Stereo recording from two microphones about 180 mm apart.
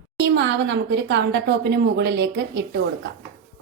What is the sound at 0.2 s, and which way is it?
A woman's voice, 75° right (ahead or behind).